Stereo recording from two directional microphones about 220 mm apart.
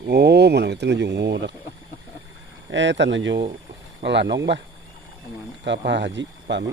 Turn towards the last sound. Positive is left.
turn(degrees=-55)  # may be behind; listen again after turning